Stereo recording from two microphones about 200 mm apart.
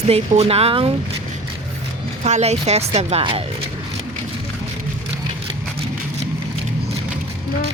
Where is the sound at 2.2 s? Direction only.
30° right (ahead or behind).